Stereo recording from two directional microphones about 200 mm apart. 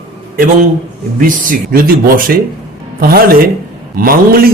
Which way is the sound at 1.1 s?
40° right (ahead or behind).